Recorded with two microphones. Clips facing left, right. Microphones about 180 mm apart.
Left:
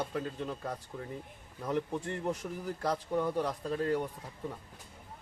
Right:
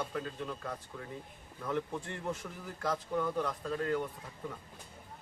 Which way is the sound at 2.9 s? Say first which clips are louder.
Left 1 dB; 20° left (ahead or behind).